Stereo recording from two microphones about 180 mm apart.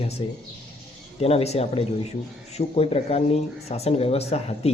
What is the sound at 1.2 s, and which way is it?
Speech, 35° left (ahead or behind).